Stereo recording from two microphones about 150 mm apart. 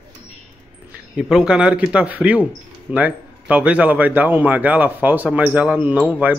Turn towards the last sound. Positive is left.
turn(degrees=-10)  # may be behind; listen again after turning